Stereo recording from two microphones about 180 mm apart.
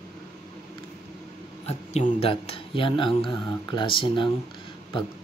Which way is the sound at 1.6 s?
35° left (ahead or behind).